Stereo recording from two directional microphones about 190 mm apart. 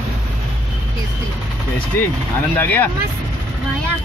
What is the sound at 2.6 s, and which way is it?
Speech, 10° left (ahead or behind).